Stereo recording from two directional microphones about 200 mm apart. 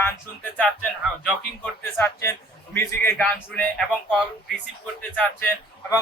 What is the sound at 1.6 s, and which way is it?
Speech, 10° left (ahead or behind).